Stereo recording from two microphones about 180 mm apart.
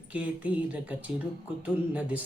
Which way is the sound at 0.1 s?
5° right (ahead or behind).